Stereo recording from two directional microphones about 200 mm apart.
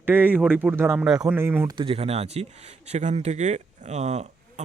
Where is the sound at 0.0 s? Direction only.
10° right (ahead or behind).